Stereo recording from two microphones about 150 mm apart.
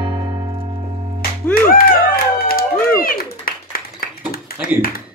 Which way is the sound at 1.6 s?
75° left (ahead or behind).